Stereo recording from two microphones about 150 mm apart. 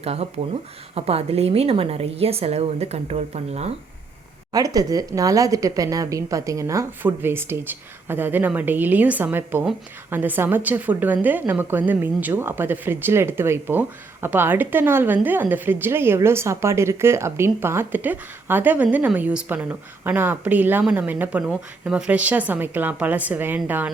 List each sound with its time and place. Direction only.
0.0 s a woman's voice: 45° right (ahead or behind)
4.5 s a woman's voice: 25° right (ahead or behind)